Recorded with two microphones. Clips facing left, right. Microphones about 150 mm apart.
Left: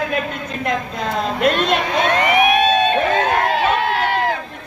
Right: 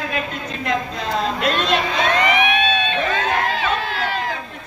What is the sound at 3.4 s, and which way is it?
Crowd, 55° left (ahead or behind).